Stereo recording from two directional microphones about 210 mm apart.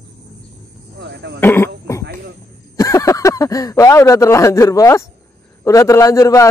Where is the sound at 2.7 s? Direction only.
15° left (ahead or behind).